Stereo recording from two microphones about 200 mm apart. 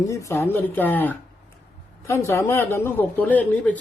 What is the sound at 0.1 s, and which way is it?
A man's voice, 15° left (ahead or behind).